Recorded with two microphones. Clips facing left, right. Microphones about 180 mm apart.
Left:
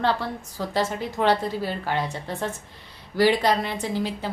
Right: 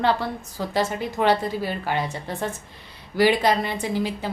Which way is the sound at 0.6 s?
10° right (ahead or behind).